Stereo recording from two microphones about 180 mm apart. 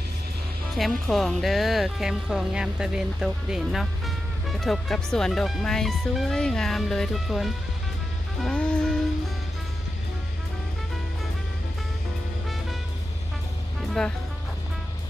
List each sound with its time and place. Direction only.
0.7 s speech: centre (ahead or behind)
8.4 s music: 5° left (ahead or behind)